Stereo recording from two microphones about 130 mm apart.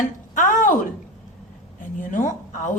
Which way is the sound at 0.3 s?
90° left.